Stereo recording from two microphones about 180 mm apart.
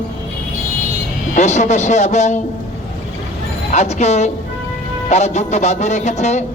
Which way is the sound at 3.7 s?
40° left (ahead or behind).